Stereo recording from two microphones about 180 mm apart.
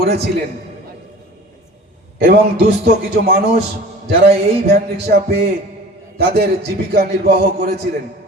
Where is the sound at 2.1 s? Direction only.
65° right (ahead or behind).